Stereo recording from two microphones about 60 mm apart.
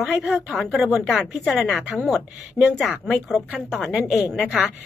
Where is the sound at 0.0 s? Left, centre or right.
Centre.